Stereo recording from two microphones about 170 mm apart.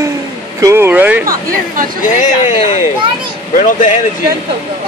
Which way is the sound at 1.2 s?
55° right (ahead or behind).